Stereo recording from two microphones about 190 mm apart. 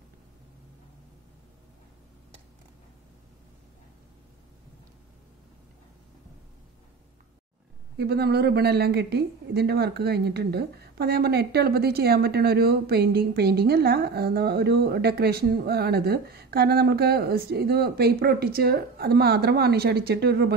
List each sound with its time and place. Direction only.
8.0 s speech: 60° right (ahead or behind)